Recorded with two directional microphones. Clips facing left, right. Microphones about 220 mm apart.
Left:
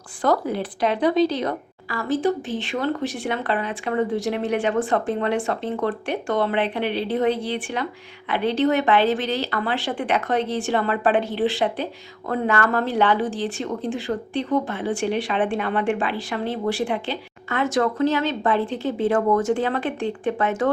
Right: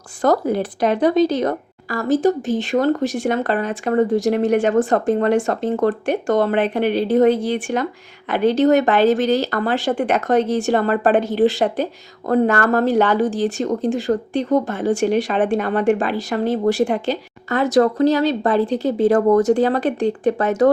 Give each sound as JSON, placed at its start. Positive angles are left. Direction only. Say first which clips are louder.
{"t": 0.2, "sound": "speech", "louder": "right 4 dB", "side_deg": -45}